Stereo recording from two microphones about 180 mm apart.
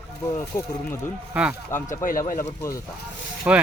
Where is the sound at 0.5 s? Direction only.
20° left (ahead or behind).